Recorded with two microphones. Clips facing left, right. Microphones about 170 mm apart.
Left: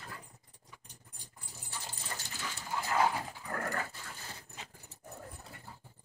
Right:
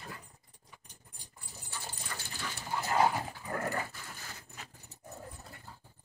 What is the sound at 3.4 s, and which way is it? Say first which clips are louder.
Dog: right 2 dB; 20° right (ahead or behind).